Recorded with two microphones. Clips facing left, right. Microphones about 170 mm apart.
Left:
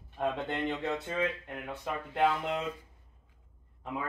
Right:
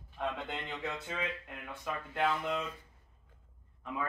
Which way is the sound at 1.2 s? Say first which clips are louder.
Left 6 dB; 30° left (ahead or behind).